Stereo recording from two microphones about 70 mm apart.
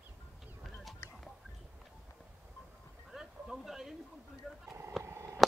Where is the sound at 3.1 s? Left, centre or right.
Centre.